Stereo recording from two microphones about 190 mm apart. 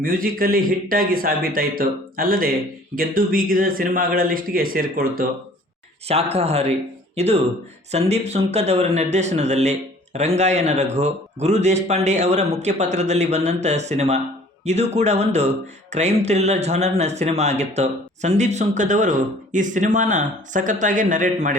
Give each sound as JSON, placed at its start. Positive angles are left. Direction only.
{"t": 0.0, "sound": "speech", "side_deg": -50}
{"t": 6.1, "sound": "speech", "side_deg": -35}